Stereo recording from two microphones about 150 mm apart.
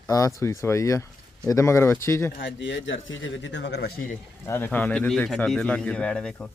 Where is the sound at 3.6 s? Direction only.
90° left.